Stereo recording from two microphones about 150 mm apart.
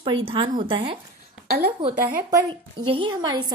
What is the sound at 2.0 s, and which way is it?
Speech, 70° right (ahead or behind).